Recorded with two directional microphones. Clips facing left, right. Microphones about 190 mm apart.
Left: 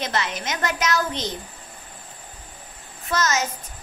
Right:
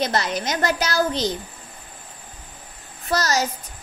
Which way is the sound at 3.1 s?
35° right (ahead or behind).